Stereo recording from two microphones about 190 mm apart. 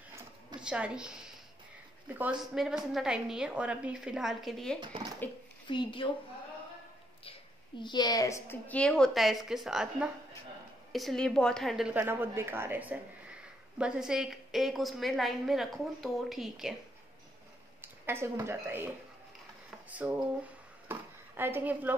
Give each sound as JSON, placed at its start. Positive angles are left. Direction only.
{"t": 0.6, "sound": "a woman's voice", "side_deg": -5}
{"t": 2.5, "sound": "a woman's voice", "side_deg": 0}
{"t": 5.7, "sound": "a woman's voice", "side_deg": 25}
{"t": 7.2, "sound": "a woman's voice", "side_deg": 25}
{"t": 18.0, "sound": "speech", "side_deg": -15}
{"t": 19.9, "sound": "speech", "side_deg": -10}